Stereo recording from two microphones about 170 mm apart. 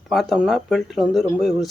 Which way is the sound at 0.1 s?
Centre (ahead or behind).